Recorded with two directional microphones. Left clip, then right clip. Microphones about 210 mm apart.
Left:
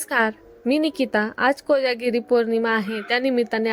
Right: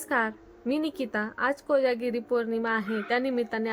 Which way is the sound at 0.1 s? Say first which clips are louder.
Left 6 dB; 30° left (ahead or behind).